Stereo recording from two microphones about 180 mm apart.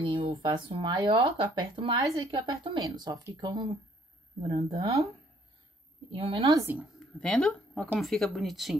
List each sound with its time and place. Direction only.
0.0 s speech: 30° right (ahead or behind)
6.1 s a woman's voice: 30° right (ahead or behind)
6.5 s speech: 15° right (ahead or behind)
7.2 s speech: 5° left (ahead or behind)